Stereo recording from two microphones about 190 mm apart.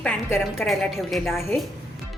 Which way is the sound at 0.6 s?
Centre (ahead or behind).